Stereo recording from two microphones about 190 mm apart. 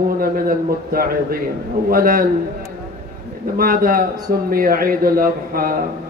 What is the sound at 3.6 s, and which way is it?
A man's voice, 50° right (ahead or behind).